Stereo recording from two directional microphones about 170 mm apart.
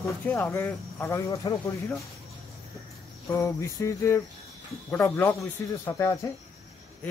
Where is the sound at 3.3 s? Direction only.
15° left (ahead or behind).